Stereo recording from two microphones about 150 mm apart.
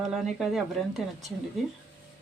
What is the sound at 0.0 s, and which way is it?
Speech, centre (ahead or behind).